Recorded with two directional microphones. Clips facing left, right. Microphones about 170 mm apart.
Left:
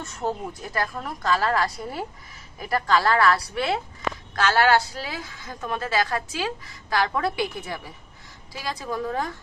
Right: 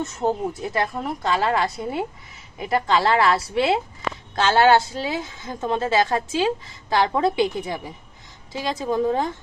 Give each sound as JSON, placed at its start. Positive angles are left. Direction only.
{"t": 0.0, "sound": "a woman's voice", "side_deg": -25}